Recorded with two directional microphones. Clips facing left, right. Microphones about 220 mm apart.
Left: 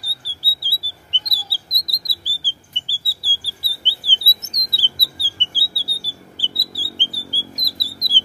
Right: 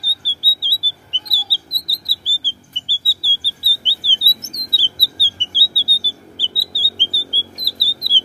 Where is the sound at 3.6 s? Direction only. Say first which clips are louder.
Right 2 dB; 15° left (ahead or behind).